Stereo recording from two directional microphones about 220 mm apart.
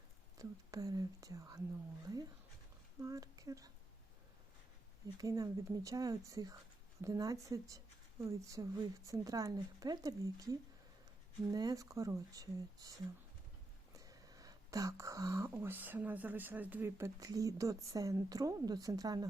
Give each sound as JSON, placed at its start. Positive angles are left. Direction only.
{"t": 0.3, "sound": "speech", "side_deg": -15}
{"t": 3.0, "sound": "speech", "side_deg": -15}
{"t": 5.1, "sound": "speech", "side_deg": -15}